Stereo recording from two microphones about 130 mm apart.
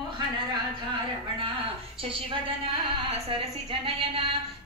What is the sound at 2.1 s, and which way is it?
A woman's voice, 45° right (ahead or behind).